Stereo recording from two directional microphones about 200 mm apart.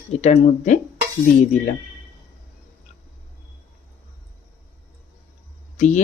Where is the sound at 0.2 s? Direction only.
35° left (ahead or behind).